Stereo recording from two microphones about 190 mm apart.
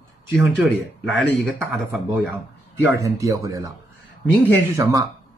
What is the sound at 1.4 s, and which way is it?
Speech, centre (ahead or behind).